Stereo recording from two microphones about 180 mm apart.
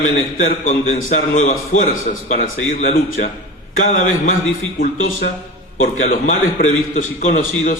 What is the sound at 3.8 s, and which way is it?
Speech, 45° left (ahead or behind).